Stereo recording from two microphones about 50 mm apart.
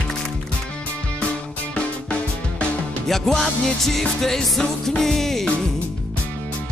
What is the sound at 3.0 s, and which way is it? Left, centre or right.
Music, centre.